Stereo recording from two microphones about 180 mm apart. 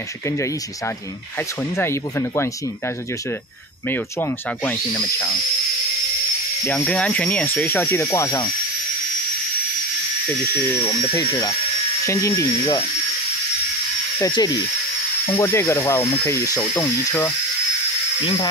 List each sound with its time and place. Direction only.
1.8 s speech: 15° left (ahead or behind)
3.9 s speech: 10° left (ahead or behind)
6.6 s speech: 10° left (ahead or behind)
10.5 s speech: 15° left (ahead or behind)
14.1 s speech: 20° left (ahead or behind)